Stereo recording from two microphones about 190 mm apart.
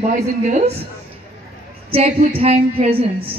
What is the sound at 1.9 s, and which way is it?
Speech, 35° right (ahead or behind).